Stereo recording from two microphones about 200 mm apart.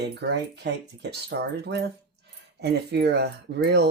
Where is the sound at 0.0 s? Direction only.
55° right (ahead or behind).